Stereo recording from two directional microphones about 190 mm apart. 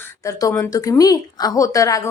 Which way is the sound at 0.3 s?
15° left (ahead or behind).